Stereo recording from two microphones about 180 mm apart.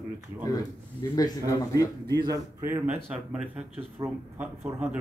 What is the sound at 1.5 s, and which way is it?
Speech, 20° left (ahead or behind).